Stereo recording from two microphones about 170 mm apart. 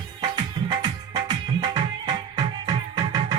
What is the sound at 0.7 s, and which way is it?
Music, 25° right (ahead or behind).